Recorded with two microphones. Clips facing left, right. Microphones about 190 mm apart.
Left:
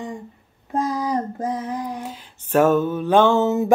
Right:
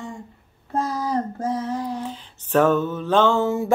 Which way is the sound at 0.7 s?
15° left (ahead or behind).